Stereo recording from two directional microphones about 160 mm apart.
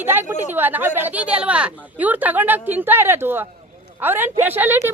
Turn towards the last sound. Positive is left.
turn(degrees=-10)  # may be behind; listen again after turning